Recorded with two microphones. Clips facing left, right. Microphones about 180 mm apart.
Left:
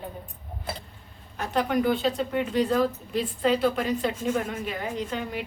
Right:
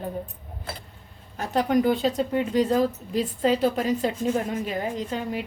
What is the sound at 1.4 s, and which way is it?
Speech, 40° right (ahead or behind).